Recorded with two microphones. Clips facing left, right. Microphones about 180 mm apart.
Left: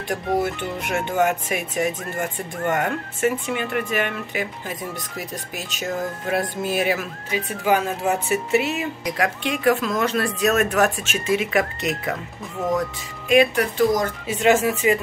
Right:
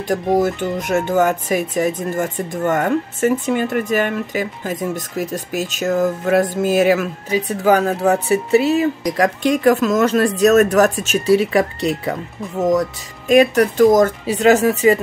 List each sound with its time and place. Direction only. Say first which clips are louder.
0.1 s speech: right 6 dB; 40° right (ahead or behind)